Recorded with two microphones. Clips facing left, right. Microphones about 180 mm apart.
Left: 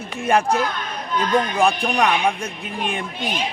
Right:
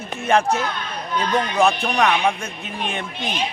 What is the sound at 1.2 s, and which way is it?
Speech, 50° left (ahead or behind).